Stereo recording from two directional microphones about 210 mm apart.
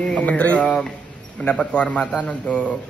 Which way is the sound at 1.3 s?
5° left (ahead or behind).